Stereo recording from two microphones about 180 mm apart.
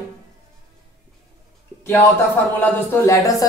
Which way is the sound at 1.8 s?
15° left (ahead or behind).